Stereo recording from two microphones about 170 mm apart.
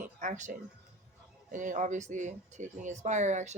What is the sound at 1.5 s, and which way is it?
A woman's voice, 50° right (ahead or behind).